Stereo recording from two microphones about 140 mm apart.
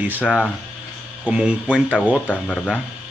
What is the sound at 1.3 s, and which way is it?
Speech, 10° right (ahead or behind).